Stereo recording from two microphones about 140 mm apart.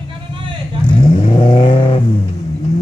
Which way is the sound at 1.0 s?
40° left (ahead or behind).